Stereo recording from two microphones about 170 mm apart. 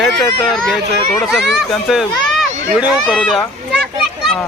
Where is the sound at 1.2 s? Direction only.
Centre (ahead or behind).